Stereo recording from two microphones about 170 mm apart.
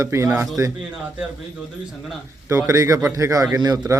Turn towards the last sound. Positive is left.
turn(degrees=-20)  # may be behind; listen again after turning